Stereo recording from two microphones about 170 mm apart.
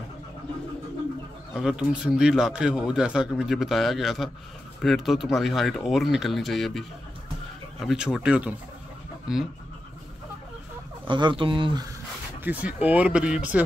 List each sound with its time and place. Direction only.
1.5 s speech: 5° right (ahead or behind)
11.1 s speech: 30° right (ahead or behind)
12.4 s speech: 10° right (ahead or behind)